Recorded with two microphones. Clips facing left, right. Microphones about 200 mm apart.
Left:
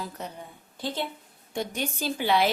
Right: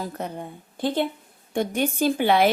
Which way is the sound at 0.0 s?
55° right (ahead or behind).